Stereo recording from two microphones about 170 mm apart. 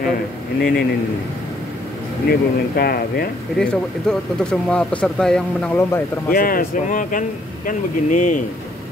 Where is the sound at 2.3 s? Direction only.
65° left (ahead or behind).